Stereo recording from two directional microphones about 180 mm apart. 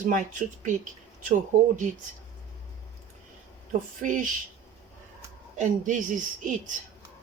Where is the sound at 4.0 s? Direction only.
45° right (ahead or behind).